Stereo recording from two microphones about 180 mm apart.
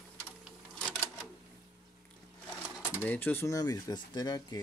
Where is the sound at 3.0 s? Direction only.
10° left (ahead or behind).